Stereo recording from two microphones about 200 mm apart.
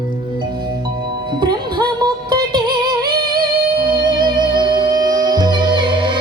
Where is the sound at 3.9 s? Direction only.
20° right (ahead or behind).